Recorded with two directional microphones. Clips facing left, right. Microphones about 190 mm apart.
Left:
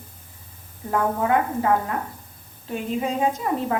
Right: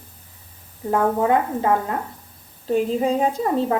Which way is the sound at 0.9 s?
25° right (ahead or behind).